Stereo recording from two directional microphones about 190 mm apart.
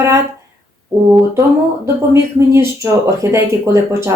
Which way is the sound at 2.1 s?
15° right (ahead or behind).